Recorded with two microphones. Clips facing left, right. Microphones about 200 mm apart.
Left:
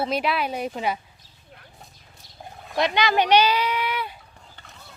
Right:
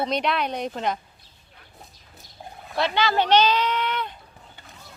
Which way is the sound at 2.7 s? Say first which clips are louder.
Left 1 dB; 15° left (ahead or behind).